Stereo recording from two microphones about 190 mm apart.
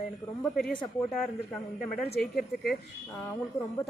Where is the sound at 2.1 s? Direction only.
50° left (ahead or behind).